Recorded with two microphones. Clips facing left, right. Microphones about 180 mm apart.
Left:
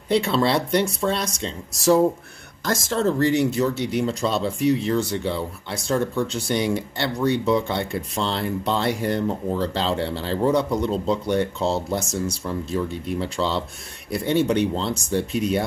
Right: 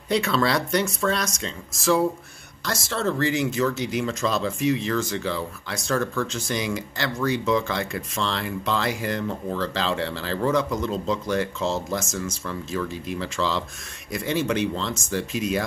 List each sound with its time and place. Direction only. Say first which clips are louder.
0.1 s speech: left 2 dB; 30° left (ahead or behind)